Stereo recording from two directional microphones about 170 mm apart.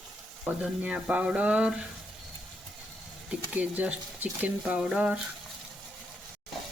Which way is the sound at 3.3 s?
10° right (ahead or behind).